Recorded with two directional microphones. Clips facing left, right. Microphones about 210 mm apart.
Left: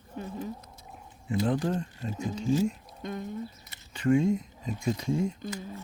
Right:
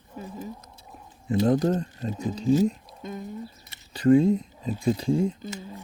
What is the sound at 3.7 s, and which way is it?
Speech, 35° right (ahead or behind).